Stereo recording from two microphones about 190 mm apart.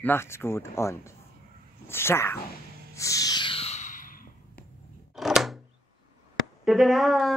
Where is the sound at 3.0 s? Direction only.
15° left (ahead or behind); by 4.3 s 45° left (ahead or behind).